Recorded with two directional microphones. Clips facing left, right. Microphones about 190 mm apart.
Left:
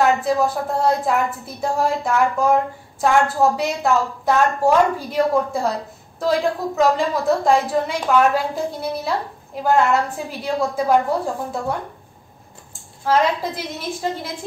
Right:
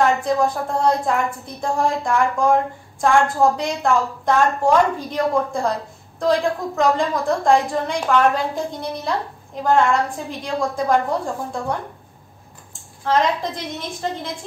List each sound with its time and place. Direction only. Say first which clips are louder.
0.0 s a woman's voice: even; 5° left (ahead or behind)
9.6 s a woman's voice: even; 5° left (ahead or behind)
13.0 s a woman's voice: left 1 dB; 10° left (ahead or behind)